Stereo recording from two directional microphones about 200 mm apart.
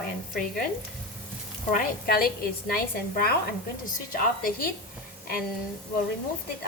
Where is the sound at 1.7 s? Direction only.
45° left (ahead or behind).